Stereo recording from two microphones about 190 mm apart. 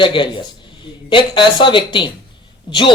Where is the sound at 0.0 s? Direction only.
25° left (ahead or behind).